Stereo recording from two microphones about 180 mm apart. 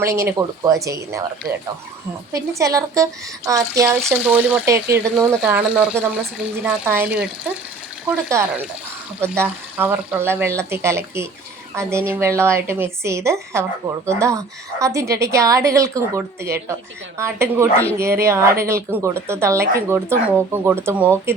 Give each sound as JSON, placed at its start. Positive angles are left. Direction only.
{"t": 0.0, "sound": "a woman's voice", "side_deg": -15}